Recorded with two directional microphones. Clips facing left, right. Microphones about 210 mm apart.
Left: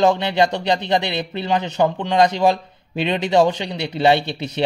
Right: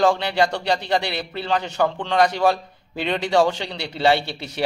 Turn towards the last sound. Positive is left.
turn(degrees=20)  # may be behind; listen again after turning